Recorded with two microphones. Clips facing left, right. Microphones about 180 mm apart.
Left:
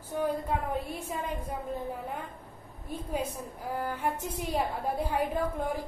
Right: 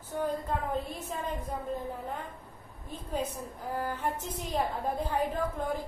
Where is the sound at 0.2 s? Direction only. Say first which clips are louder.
Left 2 dB; 10° left (ahead or behind).